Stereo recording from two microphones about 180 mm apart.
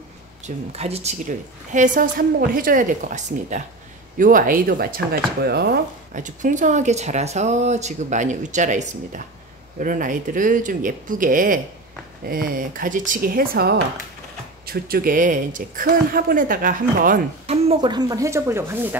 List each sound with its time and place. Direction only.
0.7 s a woman's voice: 35° right (ahead or behind); by 6.2 s 60° right (ahead or behind)
6.2 s a woman's voice: 45° right (ahead or behind)
17.5 s speech: 30° right (ahead or behind); by 18.9 s 10° right (ahead or behind)